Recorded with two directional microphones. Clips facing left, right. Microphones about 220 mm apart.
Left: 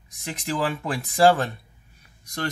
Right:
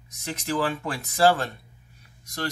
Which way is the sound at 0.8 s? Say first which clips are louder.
Left 4 dB; 15° left (ahead or behind).